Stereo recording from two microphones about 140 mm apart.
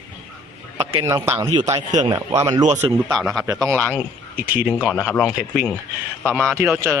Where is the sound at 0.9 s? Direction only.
25° right (ahead or behind).